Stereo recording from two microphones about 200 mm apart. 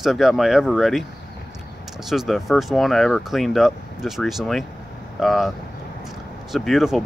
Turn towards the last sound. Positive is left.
turn(degrees=0)  # may be behind; listen again after turning